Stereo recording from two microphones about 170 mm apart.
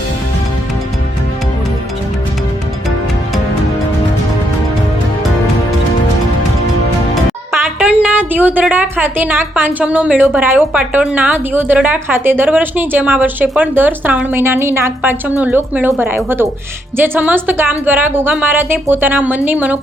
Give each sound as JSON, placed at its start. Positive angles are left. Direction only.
{"t": 7.8, "sound": "a woman's voice", "side_deg": -5}